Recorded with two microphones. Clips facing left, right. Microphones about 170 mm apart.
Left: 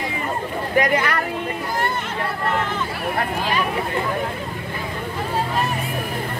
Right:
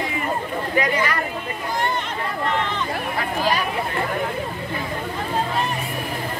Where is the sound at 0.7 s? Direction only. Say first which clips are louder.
Left 3 dB; 55° left (ahead or behind).